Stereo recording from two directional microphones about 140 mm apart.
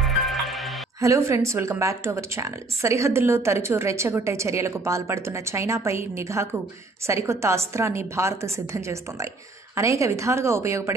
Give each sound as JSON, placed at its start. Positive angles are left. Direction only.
{"t": 0.0, "sound": "music", "side_deg": 0}
{"t": 1.0, "sound": "speech", "side_deg": -20}